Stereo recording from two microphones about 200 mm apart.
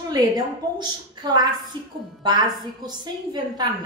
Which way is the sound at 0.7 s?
20° right (ahead or behind).